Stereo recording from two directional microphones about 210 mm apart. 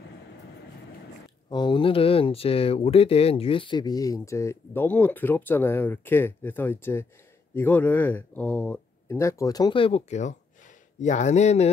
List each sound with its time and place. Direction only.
1.5 s speech: 20° left (ahead or behind)